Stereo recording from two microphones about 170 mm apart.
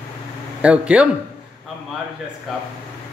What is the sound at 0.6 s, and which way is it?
Speech, 5° right (ahead or behind).